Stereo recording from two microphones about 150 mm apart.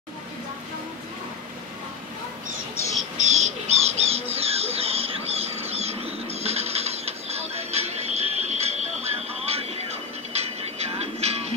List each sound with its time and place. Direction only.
3.2 s bird: 50° right (ahead or behind)